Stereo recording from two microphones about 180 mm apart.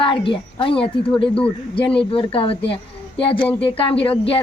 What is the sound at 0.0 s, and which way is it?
Speech, 30° left (ahead or behind).